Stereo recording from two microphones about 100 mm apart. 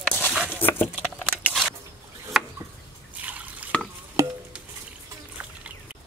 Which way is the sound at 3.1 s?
15° right (ahead or behind).